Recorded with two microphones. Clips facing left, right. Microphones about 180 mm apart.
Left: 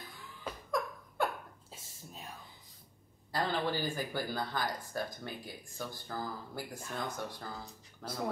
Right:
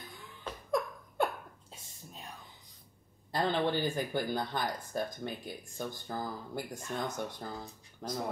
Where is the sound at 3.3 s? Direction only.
20° right (ahead or behind).